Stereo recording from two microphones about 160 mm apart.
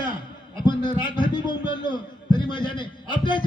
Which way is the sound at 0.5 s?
30° left (ahead or behind).